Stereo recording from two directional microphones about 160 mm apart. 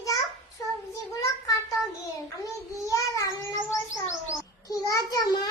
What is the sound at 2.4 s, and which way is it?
Child singing, 20° left (ahead or behind).